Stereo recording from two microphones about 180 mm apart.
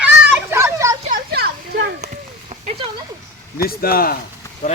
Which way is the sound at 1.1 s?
60° right (ahead or behind).